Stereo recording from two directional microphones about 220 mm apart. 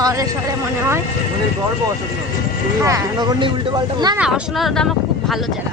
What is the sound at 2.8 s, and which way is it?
Speech, 15° right (ahead or behind).